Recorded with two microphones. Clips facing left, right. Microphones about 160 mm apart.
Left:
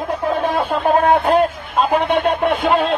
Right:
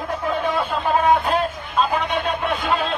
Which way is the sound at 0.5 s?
55° left (ahead or behind).